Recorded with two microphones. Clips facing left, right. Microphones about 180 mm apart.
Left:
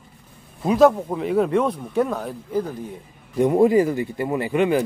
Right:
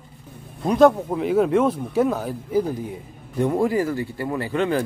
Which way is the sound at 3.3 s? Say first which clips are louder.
Left 5 dB; 15° left (ahead or behind).